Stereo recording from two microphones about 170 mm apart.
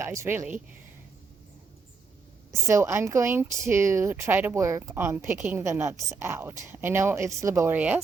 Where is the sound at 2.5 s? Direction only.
15° right (ahead or behind).